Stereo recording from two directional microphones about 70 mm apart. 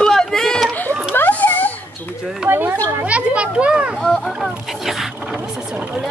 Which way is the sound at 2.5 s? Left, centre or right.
Right.